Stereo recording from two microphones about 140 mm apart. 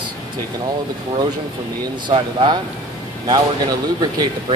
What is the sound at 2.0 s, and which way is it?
Speech, 35° right (ahead or behind).